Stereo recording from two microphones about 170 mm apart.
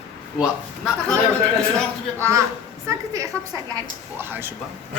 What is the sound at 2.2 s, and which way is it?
A woman's voice, 15° right (ahead or behind).